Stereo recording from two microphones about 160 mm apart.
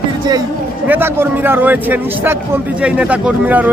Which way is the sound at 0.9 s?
15° right (ahead or behind).